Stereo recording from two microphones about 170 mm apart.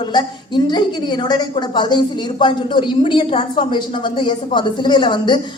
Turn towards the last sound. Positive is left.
turn(degrees=25)  # may be behind; listen again after turning